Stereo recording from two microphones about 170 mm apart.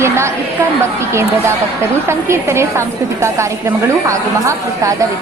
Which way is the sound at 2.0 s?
15° right (ahead or behind).